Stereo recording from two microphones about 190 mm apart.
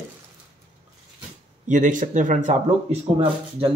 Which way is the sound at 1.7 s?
40° right (ahead or behind).